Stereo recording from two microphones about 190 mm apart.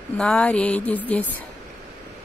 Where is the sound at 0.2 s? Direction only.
5° left (ahead or behind).